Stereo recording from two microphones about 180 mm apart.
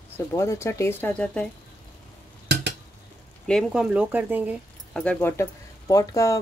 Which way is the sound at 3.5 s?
Centre (ahead or behind).